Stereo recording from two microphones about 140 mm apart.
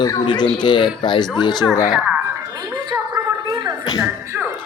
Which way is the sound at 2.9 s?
30° right (ahead or behind).